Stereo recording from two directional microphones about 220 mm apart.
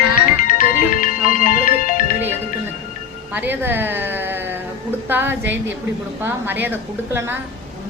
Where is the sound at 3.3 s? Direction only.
10° right (ahead or behind).